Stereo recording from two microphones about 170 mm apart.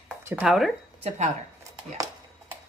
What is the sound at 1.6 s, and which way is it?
Chopping, 20° right (ahead or behind).